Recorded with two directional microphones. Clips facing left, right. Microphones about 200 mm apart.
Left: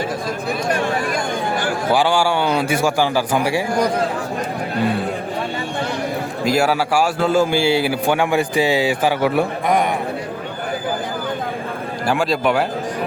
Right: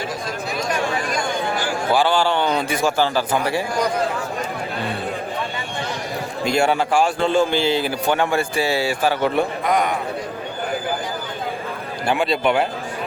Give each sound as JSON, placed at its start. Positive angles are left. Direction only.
{"t": 0.7, "sound": "a sound", "side_deg": 55}
{"t": 1.9, "sound": "a man's voice", "side_deg": 15}
{"t": 6.4, "sound": "a man's voice", "side_deg": 5}
{"t": 12.0, "sound": "a man's voice", "side_deg": 0}